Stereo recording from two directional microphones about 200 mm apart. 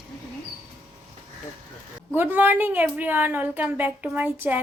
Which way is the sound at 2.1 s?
10° right (ahead or behind).